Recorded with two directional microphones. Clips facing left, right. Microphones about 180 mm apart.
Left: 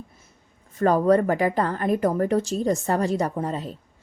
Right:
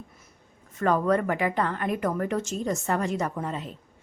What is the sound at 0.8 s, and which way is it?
A woman's voice, 35° left (ahead or behind).